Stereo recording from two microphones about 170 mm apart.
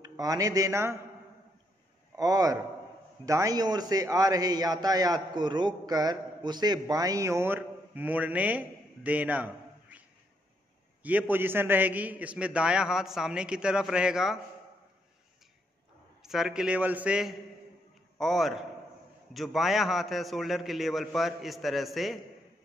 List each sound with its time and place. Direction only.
0.0 s a man's voice: 20° right (ahead or behind)
2.1 s a man's voice: 20° right (ahead or behind); by 14.4 s 5° right (ahead or behind)
16.2 s a man's voice: centre (ahead or behind)